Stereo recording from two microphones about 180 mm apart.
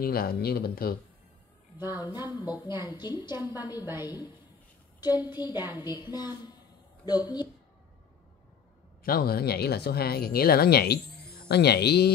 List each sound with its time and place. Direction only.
0.0 s speech: 55° left (ahead or behind)
1.8 s a woman's voice: 10° right (ahead or behind)
2.1 s a woman's voice: 20° left (ahead or behind)
3.8 s a woman's voice: 15° right (ahead or behind)
5.7 s a woman's voice: 20° left (ahead or behind)
9.0 s speech: 55° left (ahead or behind)